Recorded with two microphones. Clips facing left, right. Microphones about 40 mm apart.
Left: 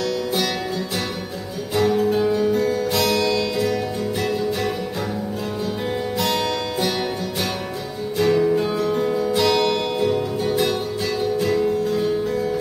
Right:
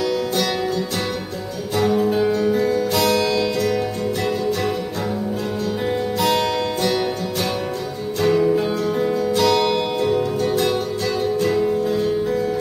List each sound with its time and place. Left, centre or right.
1.8 s music: centre
6.1 s music: centre
8.2 s music: centre